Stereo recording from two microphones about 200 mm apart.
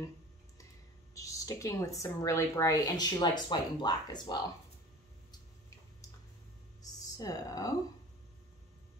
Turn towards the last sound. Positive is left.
turn(degrees=15)  # may be behind; listen again after turning